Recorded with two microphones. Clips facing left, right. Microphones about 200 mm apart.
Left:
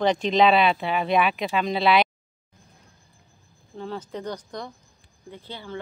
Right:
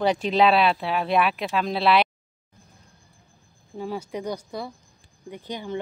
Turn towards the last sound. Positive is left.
turn(degrees=-15)  # may be behind; listen again after turning